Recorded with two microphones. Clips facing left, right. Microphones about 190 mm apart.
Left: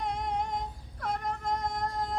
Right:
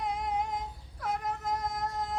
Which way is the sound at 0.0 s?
5° right (ahead or behind).